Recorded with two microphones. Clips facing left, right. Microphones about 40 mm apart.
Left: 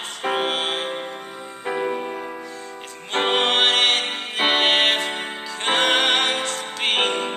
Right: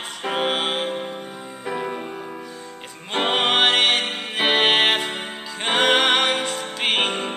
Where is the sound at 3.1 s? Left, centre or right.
Centre.